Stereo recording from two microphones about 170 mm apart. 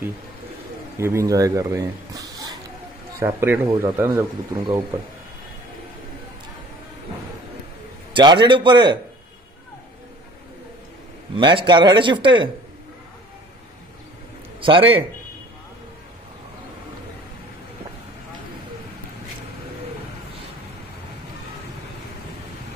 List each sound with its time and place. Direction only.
0.9 s speech: 15° right (ahead or behind)
8.1 s speech: 25° right (ahead or behind)
11.3 s speech: 30° right (ahead or behind)
14.6 s speech: 30° right (ahead or behind)